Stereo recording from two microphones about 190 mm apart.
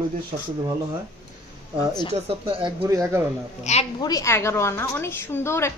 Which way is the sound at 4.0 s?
20° left (ahead or behind).